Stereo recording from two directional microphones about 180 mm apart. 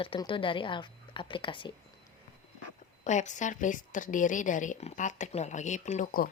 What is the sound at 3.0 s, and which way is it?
A woman's voice, 40° left (ahead or behind).